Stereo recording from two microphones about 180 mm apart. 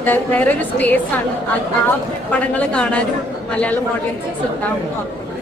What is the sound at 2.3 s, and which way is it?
Speech, 5° left (ahead or behind).